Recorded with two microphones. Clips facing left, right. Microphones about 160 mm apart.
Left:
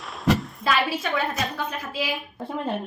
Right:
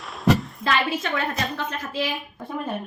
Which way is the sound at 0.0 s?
Centre (ahead or behind).